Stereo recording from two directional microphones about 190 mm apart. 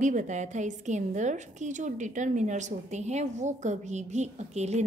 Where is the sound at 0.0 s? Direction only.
40° right (ahead or behind).